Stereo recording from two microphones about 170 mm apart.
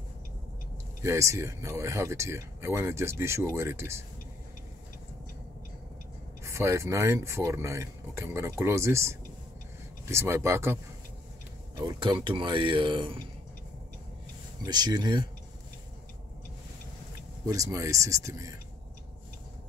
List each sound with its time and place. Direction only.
1.0 s speech: 15° right (ahead or behind)
6.4 s speech: 15° right (ahead or behind)
11.8 s speech: 25° right (ahead or behind)
14.6 s speech: 25° right (ahead or behind)
17.5 s speech: 20° right (ahead or behind)